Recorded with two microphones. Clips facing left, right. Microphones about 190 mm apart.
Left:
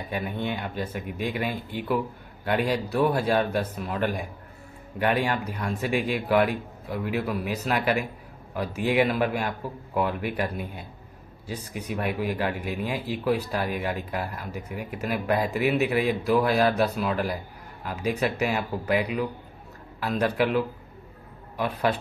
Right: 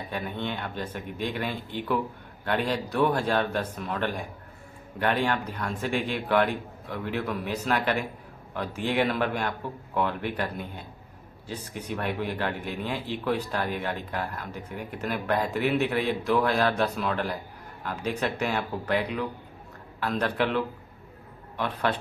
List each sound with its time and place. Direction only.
0.1 s speech: 10° left (ahead or behind)